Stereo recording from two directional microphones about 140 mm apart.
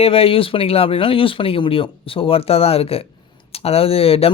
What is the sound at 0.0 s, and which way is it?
Speech, 45° left (ahead or behind).